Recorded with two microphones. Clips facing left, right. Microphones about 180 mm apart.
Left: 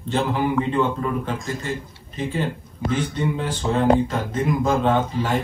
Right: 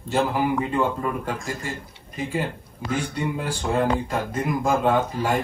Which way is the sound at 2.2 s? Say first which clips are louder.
Left 2 dB; 10° right (ahead or behind).